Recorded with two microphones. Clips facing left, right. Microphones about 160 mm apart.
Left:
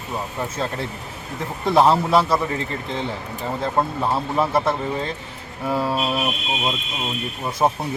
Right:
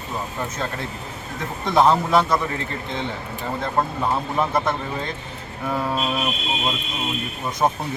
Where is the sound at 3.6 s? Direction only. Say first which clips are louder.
Left 1 dB; 5° left (ahead or behind).